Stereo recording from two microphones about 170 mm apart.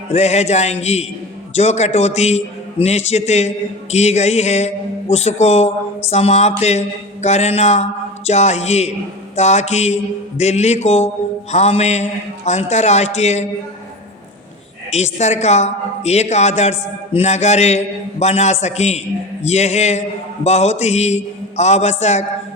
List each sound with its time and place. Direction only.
0.1 s a man's voice: 40° left (ahead or behind)
6.6 s mantra: 40° left (ahead or behind)
9.3 s a man's voice: 40° left (ahead or behind)
14.9 s a man's voice: 40° left (ahead or behind)